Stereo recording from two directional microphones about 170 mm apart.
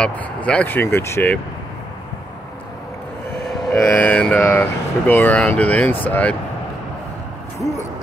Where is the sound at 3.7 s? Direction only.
5° left (ahead or behind).